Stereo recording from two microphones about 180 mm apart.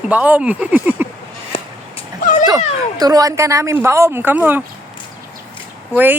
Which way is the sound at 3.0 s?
20° right (ahead or behind).